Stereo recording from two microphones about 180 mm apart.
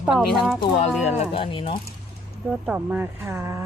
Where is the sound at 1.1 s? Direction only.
30° left (ahead or behind).